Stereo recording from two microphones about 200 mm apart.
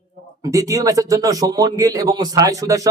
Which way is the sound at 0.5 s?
15° right (ahead or behind).